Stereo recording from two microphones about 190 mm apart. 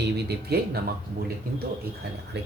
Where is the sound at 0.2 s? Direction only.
60° right (ahead or behind).